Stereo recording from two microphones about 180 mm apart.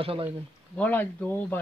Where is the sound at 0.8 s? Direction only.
10° left (ahead or behind).